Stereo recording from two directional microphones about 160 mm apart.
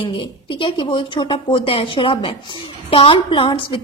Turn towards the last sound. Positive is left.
turn(degrees=35)  # may be behind; listen again after turning